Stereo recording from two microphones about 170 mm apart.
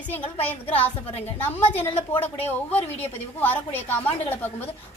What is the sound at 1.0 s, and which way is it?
Speech, 35° left (ahead or behind).